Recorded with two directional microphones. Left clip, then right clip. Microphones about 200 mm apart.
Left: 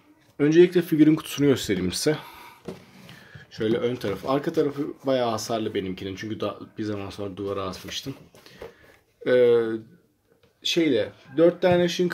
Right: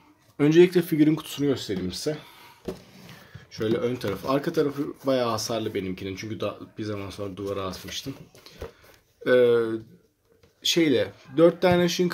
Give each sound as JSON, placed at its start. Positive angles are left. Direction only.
{"t": 0.4, "sound": "speech", "side_deg": -10}
{"t": 1.5, "sound": "speech", "side_deg": 30}
{"t": 3.5, "sound": "speech", "side_deg": 0}
{"t": 10.6, "sound": "speech", "side_deg": -15}